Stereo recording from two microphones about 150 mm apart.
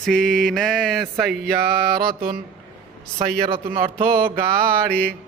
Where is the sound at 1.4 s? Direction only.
90° right.